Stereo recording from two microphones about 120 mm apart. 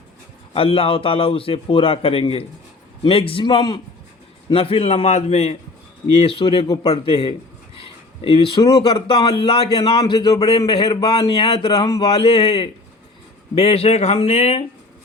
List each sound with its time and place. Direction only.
0.5 s a man's voice: 50° left (ahead or behind)
4.5 s a man's voice: 55° left (ahead or behind)
6.1 s a man's voice: 50° left (ahead or behind)
7.8 s a sound: 50° left (ahead or behind)
8.6 s speech: 35° left (ahead or behind)
10.0 s speech: 30° left (ahead or behind)
10.7 s speech: 45° left (ahead or behind)
13.6 s a man's voice: 55° left (ahead or behind)